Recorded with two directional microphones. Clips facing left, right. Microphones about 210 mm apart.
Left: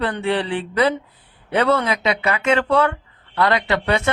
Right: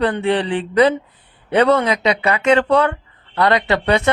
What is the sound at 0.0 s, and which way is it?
Speech, 25° right (ahead or behind).